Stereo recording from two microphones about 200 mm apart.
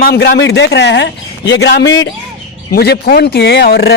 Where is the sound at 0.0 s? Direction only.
55° left (ahead or behind).